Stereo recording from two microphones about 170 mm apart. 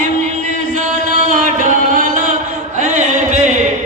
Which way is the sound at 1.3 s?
50° right (ahead or behind).